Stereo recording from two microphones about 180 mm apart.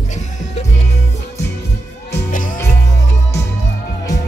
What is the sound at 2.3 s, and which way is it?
Music, 45° left (ahead or behind).